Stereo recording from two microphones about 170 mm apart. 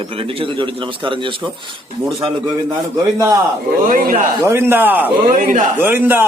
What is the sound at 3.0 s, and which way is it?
Speech, 15° right (ahead or behind).